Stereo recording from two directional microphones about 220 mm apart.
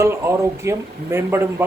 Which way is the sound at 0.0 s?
10° right (ahead or behind).